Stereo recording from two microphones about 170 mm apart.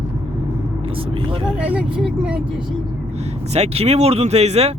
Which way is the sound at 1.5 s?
5° right (ahead or behind).